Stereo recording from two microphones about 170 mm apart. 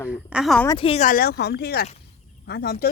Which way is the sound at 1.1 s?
60° left (ahead or behind).